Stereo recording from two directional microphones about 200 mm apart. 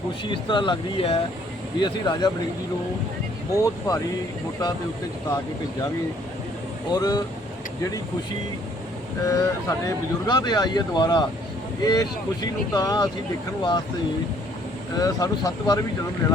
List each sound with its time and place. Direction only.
0.3 s speech: 25° left (ahead or behind)
3.6 s speech: 15° left (ahead or behind)
6.9 s speech: 20° left (ahead or behind)
9.2 s speech: 15° left (ahead or behind)
14.9 s speech: 20° left (ahead or behind)